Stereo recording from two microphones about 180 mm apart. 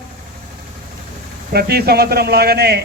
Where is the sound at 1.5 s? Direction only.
60° right (ahead or behind).